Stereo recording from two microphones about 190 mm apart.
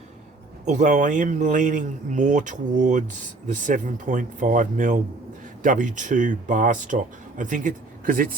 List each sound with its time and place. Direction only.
0.6 s speech: 40° right (ahead or behind)